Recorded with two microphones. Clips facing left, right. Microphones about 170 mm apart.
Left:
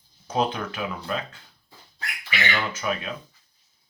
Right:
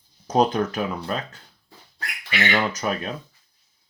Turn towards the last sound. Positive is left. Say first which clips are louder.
# right 3 dB
turn(degrees=-40)  # may be behind; listen again after turning